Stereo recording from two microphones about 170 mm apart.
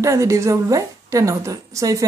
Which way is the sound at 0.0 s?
20° right (ahead or behind).